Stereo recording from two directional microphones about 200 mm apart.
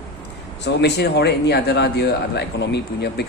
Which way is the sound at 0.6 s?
60° left (ahead or behind).